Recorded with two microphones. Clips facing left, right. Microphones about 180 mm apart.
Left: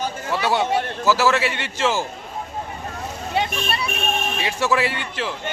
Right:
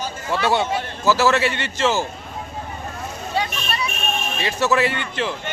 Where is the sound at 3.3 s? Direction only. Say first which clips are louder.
Left 2 dB; 25° left (ahead or behind).